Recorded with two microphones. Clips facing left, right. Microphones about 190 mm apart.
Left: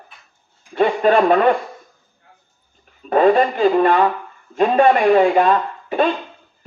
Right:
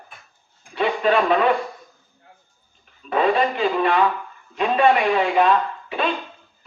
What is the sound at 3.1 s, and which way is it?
A man's voice, 45° left (ahead or behind).